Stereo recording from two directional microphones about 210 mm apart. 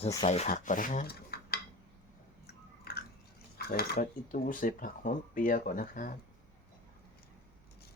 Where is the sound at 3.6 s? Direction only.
50° left (ahead or behind).